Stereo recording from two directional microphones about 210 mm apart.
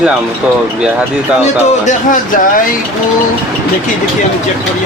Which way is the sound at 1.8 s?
40° left (ahead or behind).